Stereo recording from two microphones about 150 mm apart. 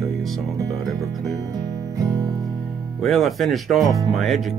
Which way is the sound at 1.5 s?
25° right (ahead or behind).